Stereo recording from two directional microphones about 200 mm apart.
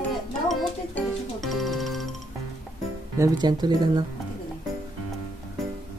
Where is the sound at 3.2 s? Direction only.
20° right (ahead or behind).